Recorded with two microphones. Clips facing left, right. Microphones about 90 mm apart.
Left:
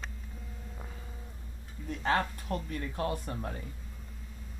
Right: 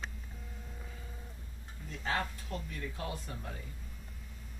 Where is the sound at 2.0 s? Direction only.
55° left (ahead or behind).